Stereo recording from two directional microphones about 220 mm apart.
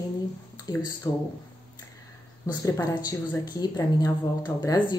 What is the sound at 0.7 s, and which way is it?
Speech, 15° left (ahead or behind).